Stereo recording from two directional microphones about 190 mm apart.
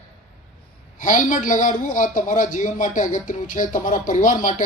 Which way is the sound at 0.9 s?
45° left (ahead or behind).